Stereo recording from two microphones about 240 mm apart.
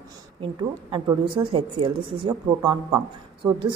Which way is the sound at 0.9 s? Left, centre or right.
Right.